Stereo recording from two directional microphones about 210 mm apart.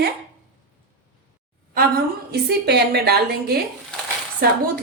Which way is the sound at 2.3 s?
50° right (ahead or behind).